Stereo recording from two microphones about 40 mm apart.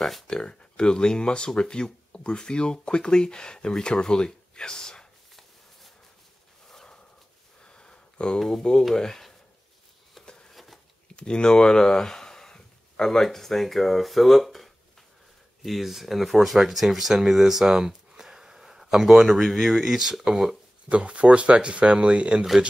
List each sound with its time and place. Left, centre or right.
0.3 s speech: left
6.7 s dog: centre
7.6 s a sound: left
8.4 s speech: centre
10.2 s a sound: centre
10.5 s patter: centre
11.1 s speech: left; by 20.5 s centre
20.9 s speech: right